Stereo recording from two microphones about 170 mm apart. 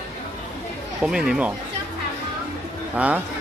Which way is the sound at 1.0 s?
5° right (ahead or behind).